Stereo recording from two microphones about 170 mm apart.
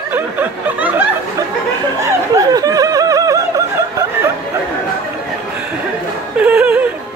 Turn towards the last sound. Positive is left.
turn(degrees=-10)  # may be behind; listen again after turning